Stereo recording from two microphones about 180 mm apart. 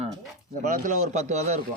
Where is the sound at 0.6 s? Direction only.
45° right (ahead or behind).